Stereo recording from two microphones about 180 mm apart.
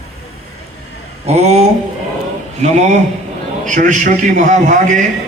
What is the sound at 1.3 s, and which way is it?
Speech, 35° right (ahead or behind).